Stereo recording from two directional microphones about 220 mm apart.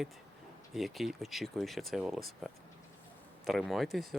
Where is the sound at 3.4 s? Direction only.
Centre (ahead or behind).